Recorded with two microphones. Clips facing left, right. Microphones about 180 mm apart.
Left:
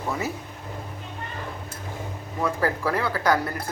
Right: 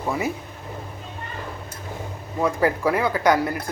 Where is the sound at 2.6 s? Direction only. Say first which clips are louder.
Right 5 dB; 15° right (ahead or behind).